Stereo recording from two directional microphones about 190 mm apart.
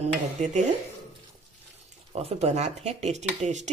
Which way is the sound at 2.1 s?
30° right (ahead or behind).